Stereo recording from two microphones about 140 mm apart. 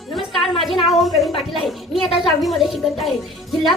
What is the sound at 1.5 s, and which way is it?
A child's voice, centre (ahead or behind).